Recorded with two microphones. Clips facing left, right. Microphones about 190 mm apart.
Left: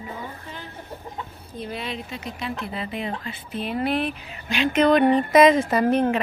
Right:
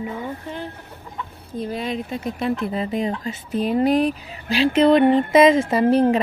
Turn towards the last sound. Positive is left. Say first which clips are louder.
# right 4 dB
turn(degrees=-35)  # may be behind; listen again after turning